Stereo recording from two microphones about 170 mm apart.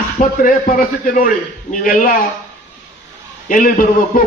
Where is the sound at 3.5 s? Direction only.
55° left (ahead or behind).